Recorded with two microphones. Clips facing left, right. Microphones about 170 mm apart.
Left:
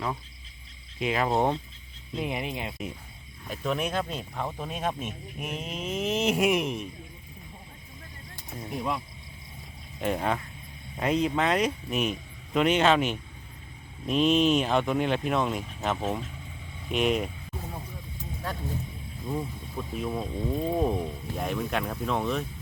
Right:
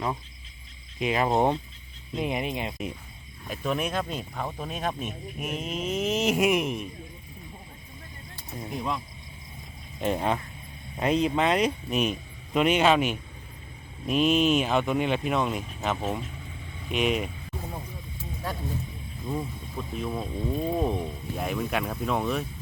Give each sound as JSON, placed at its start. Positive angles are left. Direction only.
{"t": 0.9, "sound": "speech", "side_deg": -20}
{"t": 3.5, "sound": "speech", "side_deg": -5}
{"t": 10.0, "sound": "speech", "side_deg": -25}
{"t": 19.3, "sound": "speech", "side_deg": 5}